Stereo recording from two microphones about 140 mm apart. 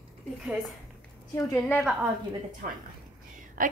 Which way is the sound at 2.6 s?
70° right (ahead or behind).